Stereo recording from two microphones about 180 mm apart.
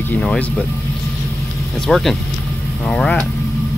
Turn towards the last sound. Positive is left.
turn(degrees=5)  # may be behind; listen again after turning